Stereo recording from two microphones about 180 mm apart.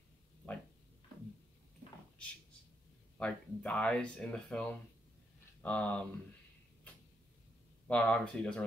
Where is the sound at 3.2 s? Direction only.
5° left (ahead or behind).